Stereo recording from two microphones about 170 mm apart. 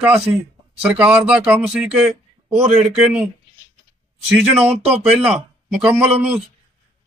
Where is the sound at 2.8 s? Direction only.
5° right (ahead or behind).